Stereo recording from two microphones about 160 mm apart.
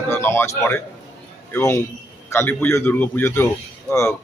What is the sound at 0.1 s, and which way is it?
A man's voice, 15° left (ahead or behind).